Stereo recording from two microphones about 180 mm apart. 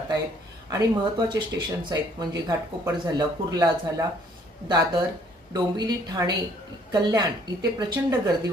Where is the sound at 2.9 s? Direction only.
25° right (ahead or behind).